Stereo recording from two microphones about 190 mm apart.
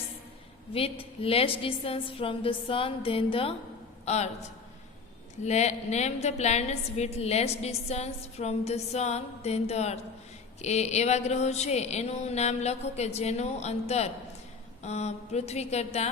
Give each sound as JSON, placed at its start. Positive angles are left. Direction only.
{"t": 0.7, "sound": "a woman's voice", "side_deg": 30}
{"t": 5.4, "sound": "a woman's voice", "side_deg": 35}